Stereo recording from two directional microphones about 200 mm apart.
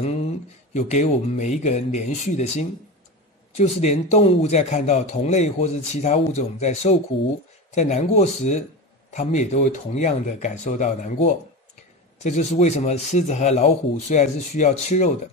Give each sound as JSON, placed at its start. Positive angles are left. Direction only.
{"t": 0.7, "sound": "speech", "side_deg": 35}